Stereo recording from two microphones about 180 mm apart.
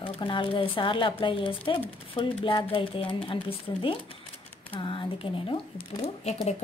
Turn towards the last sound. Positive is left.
turn(degrees=35)  # may be behind; listen again after turning